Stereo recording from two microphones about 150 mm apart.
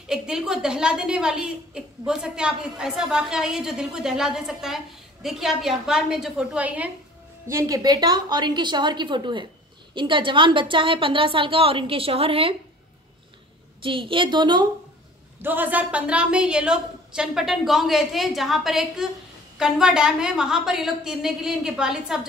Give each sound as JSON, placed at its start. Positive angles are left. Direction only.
{"t": 0.1, "sound": "a woman's voice", "side_deg": -5}
{"t": 7.4, "sound": "a woman's voice", "side_deg": -20}
{"t": 13.8, "sound": "a woman's voice", "side_deg": -35}
{"t": 15.4, "sound": "a woman's voice", "side_deg": -10}